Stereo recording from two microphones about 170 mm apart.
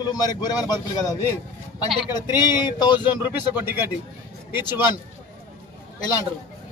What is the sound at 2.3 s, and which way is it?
Speech, 25° left (ahead or behind).